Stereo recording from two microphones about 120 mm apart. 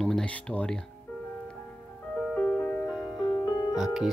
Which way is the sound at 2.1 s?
5° left (ahead or behind).